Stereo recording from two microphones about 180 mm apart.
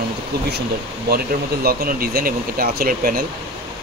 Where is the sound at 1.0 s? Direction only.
55° right (ahead or behind).